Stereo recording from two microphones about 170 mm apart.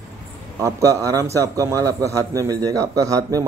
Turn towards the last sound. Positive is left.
turn(degrees=-20)  # may be behind; listen again after turning